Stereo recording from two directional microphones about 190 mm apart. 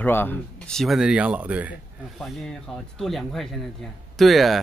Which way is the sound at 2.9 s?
Centre (ahead or behind).